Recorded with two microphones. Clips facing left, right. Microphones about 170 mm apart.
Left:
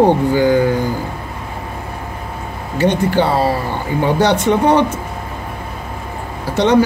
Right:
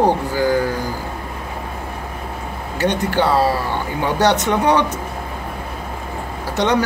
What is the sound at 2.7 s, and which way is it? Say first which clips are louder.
Speech: left 4 dB; 15° left (ahead or behind).